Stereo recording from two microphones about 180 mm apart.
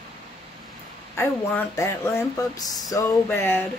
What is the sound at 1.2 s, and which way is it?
Speech, 15° left (ahead or behind).